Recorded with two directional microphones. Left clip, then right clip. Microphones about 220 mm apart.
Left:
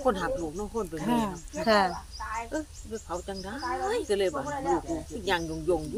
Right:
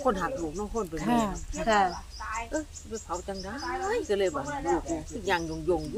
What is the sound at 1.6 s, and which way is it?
Speech, 35° left (ahead or behind).